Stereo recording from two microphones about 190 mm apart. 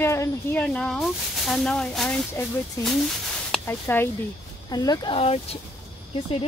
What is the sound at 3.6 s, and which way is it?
Speech, 10° left (ahead or behind).